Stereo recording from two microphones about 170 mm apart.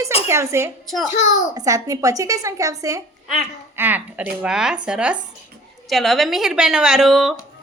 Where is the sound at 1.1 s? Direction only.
45° left (ahead or behind).